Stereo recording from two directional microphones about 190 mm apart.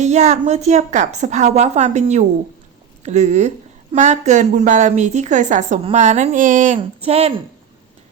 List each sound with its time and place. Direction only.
0.0 s a woman's voice: 35° right (ahead or behind)
6.7 s a woman's voice: 30° right (ahead or behind)